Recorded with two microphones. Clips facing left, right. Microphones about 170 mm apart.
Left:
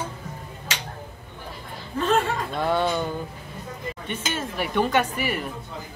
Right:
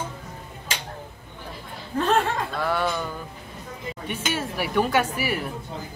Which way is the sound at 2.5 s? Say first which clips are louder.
Left 2 dB; 20° left (ahead or behind).